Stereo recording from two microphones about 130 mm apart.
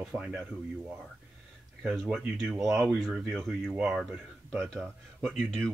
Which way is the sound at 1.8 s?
5° right (ahead or behind).